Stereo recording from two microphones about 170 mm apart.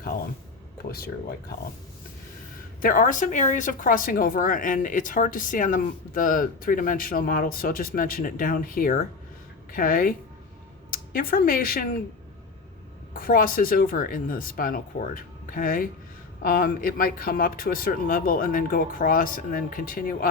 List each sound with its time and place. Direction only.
0.9 s speech: 65° left (ahead or behind)
2.8 s speech: 55° left (ahead or behind)
13.1 s speech: 55° left (ahead or behind)